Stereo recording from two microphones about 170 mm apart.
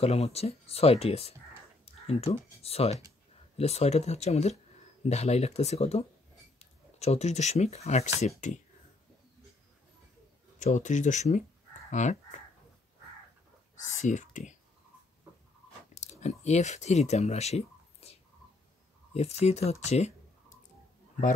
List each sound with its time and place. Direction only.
0.0 s speech: 35° left (ahead or behind)
10.6 s speech: 45° left (ahead or behind)
13.7 s speech: 45° left (ahead or behind)
15.9 s speech: 45° left (ahead or behind)
19.1 s speech: 40° left (ahead or behind)